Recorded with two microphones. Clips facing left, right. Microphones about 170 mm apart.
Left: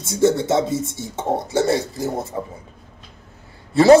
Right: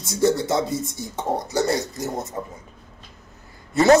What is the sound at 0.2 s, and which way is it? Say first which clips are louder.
Speech: left 3 dB; 20° left (ahead or behind).